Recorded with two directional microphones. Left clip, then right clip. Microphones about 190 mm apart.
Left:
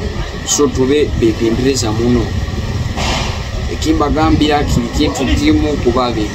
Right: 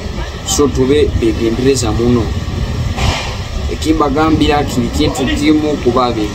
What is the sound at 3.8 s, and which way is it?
Speech, 5° right (ahead or behind).